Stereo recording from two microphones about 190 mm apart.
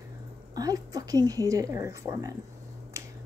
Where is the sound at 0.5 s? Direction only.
20° right (ahead or behind).